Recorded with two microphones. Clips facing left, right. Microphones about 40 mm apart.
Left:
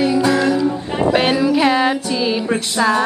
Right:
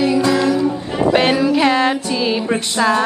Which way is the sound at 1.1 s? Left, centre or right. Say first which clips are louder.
Right 1 dB; centre.